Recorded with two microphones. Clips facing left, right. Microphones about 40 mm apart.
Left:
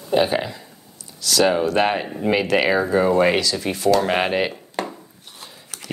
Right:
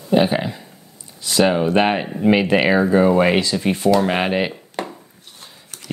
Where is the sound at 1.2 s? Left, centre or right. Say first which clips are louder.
Right 1 dB; right.